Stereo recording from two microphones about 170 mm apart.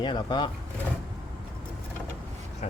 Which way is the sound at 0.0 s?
25° left (ahead or behind).